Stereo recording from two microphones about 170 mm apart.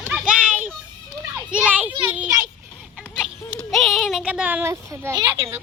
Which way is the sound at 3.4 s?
Centre (ahead or behind).